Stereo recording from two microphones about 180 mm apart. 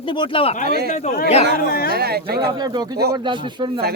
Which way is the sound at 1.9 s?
60° right (ahead or behind).